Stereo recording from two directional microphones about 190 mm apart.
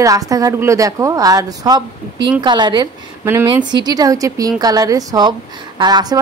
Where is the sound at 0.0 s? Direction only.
20° right (ahead or behind).